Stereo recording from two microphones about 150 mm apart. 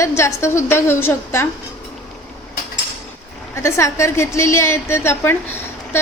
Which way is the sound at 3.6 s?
20° left (ahead or behind).